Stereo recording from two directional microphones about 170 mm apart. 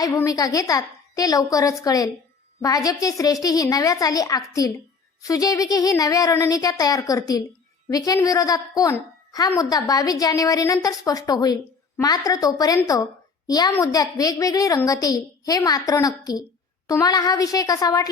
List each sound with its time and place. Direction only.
0.0 s a woman's voice: 20° left (ahead or behind)